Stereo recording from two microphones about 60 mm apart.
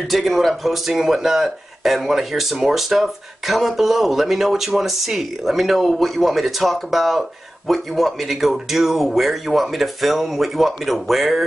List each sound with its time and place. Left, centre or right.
0.1 s speech: centre